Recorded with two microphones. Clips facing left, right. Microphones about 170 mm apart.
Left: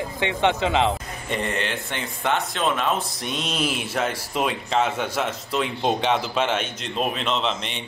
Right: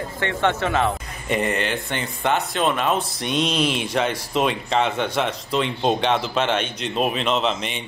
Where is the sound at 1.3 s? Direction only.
5° right (ahead or behind).